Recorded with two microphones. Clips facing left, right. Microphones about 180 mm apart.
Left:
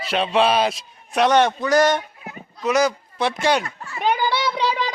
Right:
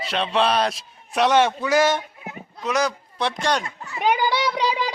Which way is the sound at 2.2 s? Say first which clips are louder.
Right 1 dB; 15° right (ahead or behind).